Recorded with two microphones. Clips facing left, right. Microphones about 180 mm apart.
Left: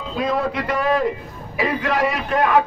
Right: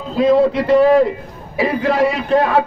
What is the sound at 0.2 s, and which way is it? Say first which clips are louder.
A man's voice: right 9 dB; 25° right (ahead or behind).